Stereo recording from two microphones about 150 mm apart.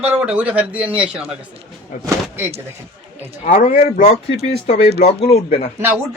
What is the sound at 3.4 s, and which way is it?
Speech, 60° left (ahead or behind).